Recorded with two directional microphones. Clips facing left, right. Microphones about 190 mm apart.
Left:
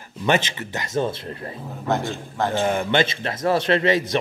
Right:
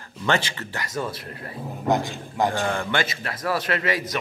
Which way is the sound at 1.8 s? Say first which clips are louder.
Right 1 dB; 15° right (ahead or behind).